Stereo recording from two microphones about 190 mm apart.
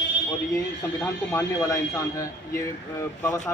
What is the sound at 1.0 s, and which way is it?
A man's voice, 15° left (ahead or behind).